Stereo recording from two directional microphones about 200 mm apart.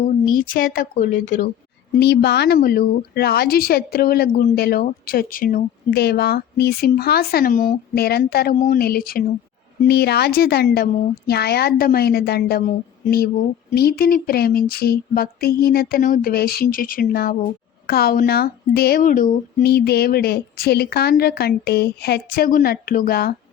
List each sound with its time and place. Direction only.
0.0 s a woman's voice: 45° left (ahead or behind)
2.0 s a woman's voice: 55° left (ahead or behind)